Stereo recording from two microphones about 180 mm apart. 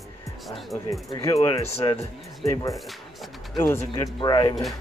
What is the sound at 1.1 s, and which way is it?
Speech, 25° left (ahead or behind).